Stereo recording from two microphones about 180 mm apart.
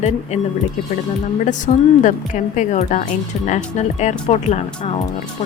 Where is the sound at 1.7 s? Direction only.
40° left (ahead or behind).